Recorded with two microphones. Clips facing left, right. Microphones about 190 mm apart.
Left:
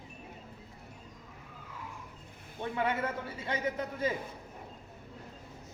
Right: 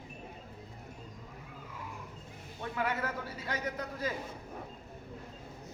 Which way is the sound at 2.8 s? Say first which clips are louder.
Left 2 dB; 25° left (ahead or behind).